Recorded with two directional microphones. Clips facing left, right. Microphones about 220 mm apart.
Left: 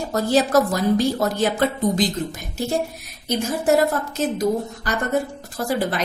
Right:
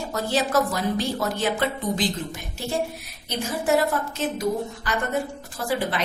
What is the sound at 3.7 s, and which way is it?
A woman's voice, 40° left (ahead or behind).